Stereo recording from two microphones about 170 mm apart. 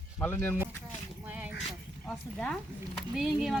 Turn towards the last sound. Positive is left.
turn(degrees=0)  # may be behind; listen again after turning